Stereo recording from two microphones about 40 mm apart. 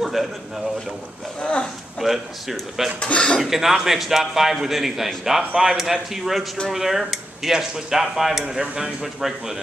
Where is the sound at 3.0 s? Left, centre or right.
Left.